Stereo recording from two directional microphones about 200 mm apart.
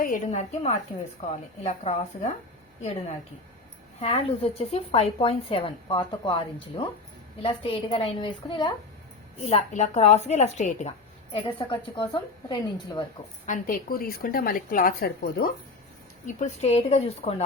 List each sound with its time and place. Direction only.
0.0 s a woman's voice: 40° left (ahead or behind)
4.0 s a woman's voice: 30° left (ahead or behind)
13.5 s a woman's voice: 45° left (ahead or behind)
16.2 s a woman's voice: 35° left (ahead or behind)